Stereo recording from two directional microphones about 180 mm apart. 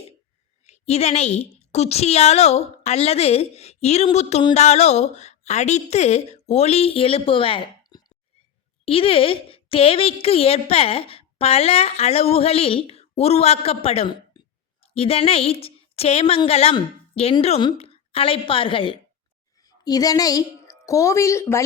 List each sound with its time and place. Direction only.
0.6 s a woman's voice: 35° left (ahead or behind); by 21.6 s 15° left (ahead or behind)